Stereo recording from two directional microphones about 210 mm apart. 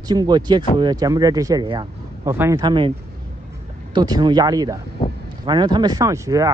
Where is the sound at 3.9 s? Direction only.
20° right (ahead or behind).